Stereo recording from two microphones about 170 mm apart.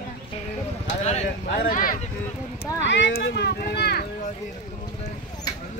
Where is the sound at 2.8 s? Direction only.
90° left; by 4.0 s 70° left (ahead or behind).